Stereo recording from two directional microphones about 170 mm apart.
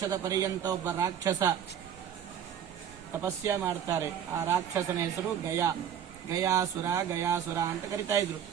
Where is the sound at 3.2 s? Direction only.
15° right (ahead or behind).